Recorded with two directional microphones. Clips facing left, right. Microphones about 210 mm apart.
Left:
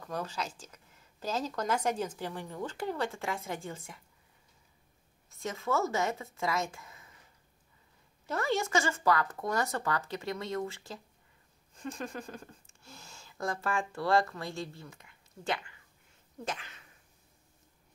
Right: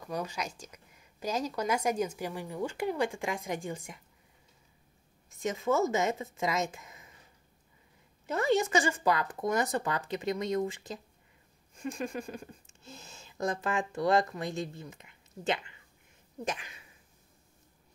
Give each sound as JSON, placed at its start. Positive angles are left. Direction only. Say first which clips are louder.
{"t": 0.0, "sound": "a woman's voice", "louder": "right 1 dB", "side_deg": -10}
{"t": 5.3, "sound": "speech", "louder": "right 3 dB", "side_deg": -15}
{"t": 8.3, "sound": "a woman's voice", "louder": "right 4 dB", "side_deg": -20}